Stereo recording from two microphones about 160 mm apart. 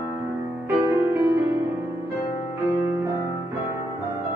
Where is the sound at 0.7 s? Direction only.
20° right (ahead or behind).